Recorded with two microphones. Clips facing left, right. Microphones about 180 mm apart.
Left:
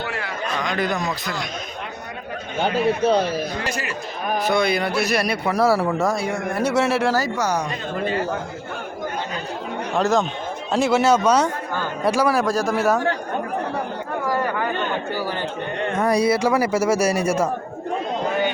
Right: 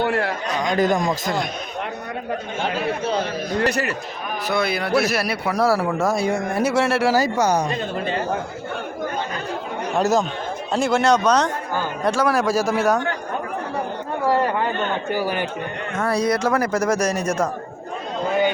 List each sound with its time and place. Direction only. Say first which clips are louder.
0.0 s a man's voice: right 6 dB; 60° right (ahead or behind)
3.6 s a man's voice: right 6 dB; 60° right (ahead or behind)
4.4 s a man's voice: left 1 dB; 5° right (ahead or behind)
6.1 s speech: right 2 dB; 15° right (ahead or behind)
6.7 s a man's voice: even; centre (ahead or behind)
7.1 s speech: right 3 dB; 20° right (ahead or behind)
10.0 s a man's voice: even; 5° right (ahead or behind)
14.3 s chatter: right 4 dB; 25° right (ahead or behind)
15.1 s speech: right 3 dB; 15° right (ahead or behind)
16.0 s a man's voice: left 2 dB; 15° left (ahead or behind)